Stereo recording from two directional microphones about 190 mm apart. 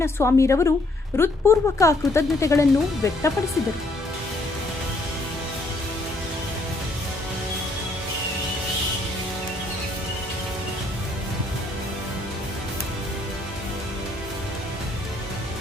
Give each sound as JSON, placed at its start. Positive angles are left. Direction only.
{"t": 0.0, "sound": "speech", "side_deg": 15}